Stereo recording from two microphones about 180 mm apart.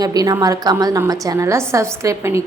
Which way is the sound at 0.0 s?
20° right (ahead or behind).